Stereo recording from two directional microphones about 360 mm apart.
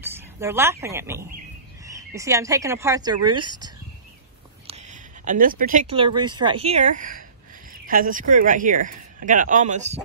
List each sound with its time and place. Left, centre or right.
0.0 s speech: centre
4.6 s a sound: centre
6.3 s speech: centre